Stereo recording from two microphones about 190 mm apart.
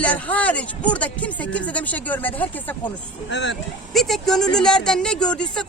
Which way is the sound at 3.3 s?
65° left (ahead or behind).